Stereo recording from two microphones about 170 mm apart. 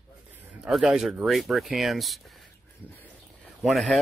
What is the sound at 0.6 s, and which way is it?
Speech, centre (ahead or behind).